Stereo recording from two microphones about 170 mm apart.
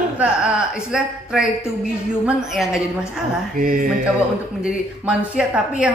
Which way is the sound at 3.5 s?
55° right (ahead or behind).